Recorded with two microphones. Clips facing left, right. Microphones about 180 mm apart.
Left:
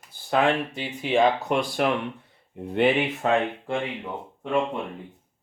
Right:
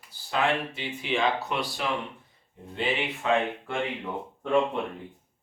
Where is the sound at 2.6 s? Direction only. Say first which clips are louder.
Left 11 dB; 65° left (ahead or behind).